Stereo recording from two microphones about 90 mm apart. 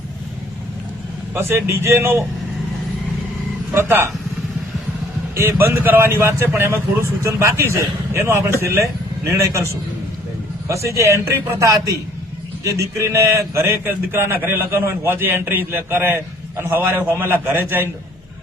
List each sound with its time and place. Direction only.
1.3 s a man's voice: 25° right (ahead or behind)
3.8 s a man's voice: 25° right (ahead or behind)
5.3 s a man's voice: 30° right (ahead or behind)
10.7 s a man's voice: 35° right (ahead or behind)